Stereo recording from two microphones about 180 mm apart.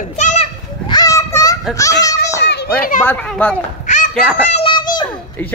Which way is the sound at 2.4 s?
70° left (ahead or behind).